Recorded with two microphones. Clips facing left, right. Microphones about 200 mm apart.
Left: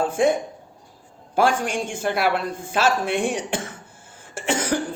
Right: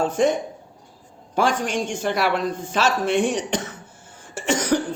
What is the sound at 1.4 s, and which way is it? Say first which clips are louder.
Speech: left 1 dB; 10° left (ahead or behind).